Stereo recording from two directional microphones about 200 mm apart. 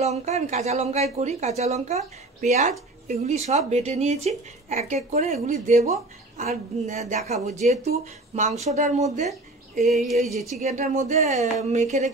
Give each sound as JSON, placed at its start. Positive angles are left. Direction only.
{"t": 0.0, "sound": "a woman's voice", "side_deg": -35}
{"t": 9.8, "sound": "a sound", "side_deg": 0}
{"t": 10.5, "sound": "a woman's voice", "side_deg": -35}